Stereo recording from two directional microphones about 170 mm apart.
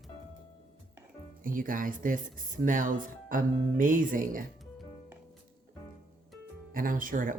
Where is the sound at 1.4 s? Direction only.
55° right (ahead or behind).